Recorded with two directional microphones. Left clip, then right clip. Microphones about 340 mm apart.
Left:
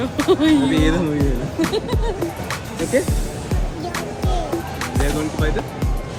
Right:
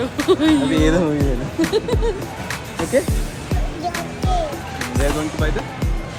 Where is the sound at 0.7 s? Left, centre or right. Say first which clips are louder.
Right 2 dB; centre.